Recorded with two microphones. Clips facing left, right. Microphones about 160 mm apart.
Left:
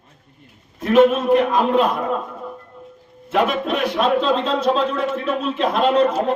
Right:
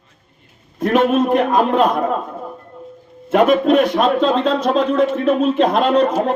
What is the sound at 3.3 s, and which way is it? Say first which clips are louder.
Speech: right 7 dB; 50° right (ahead or behind).